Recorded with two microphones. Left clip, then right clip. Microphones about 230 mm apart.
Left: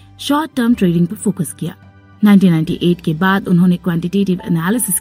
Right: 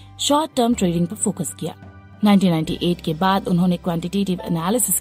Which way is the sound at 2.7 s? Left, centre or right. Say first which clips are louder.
Left 5 dB; centre.